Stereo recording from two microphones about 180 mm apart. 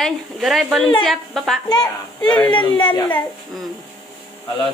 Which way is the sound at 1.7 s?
25° left (ahead or behind).